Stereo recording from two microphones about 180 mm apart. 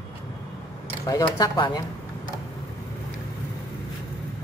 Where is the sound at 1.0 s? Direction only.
20° left (ahead or behind).